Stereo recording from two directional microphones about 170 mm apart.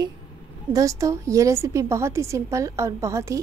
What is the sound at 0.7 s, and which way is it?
A woman's voice, 20° right (ahead or behind).